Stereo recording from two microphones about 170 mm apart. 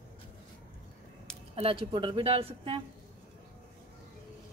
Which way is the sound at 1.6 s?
30° right (ahead or behind).